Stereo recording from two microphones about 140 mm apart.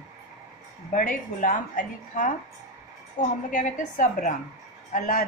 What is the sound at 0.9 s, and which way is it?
A woman's voice, 70° left (ahead or behind).